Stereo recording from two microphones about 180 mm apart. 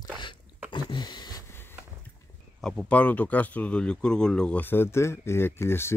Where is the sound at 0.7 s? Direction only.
25° left (ahead or behind).